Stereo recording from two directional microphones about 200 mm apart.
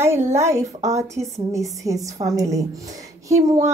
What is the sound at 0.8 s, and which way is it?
Speech, 15° right (ahead or behind).